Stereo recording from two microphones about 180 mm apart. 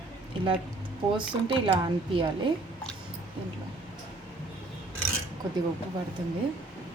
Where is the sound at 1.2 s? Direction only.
25° right (ahead or behind).